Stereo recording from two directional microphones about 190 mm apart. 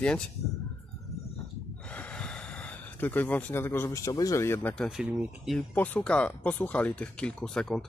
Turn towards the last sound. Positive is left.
turn(degrees=5)  # may be behind; listen again after turning